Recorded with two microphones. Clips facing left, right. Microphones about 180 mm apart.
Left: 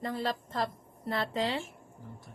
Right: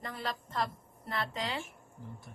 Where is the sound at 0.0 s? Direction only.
30° left (ahead or behind).